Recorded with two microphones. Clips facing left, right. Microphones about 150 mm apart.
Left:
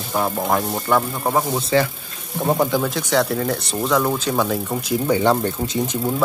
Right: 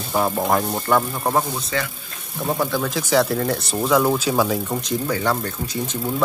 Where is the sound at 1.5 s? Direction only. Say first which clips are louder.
Left 7 dB; 30° left (ahead or behind).